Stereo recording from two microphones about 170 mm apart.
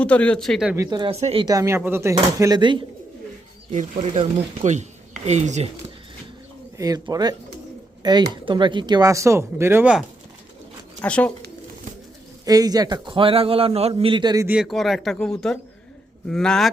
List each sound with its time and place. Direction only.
0.0 s speech: 5° left (ahead or behind)
0.8 s speech: 25° right (ahead or behind)
1.1 s speech: 35° right (ahead or behind)
1.5 s speech: 20° right (ahead or behind)
3.7 s speech: 40° right (ahead or behind)
6.7 s speech: 20° right (ahead or behind)
11.0 s speech: 5° left (ahead or behind)
12.5 s speech: 20° right (ahead or behind)
14.4 s speech: 5° right (ahead or behind)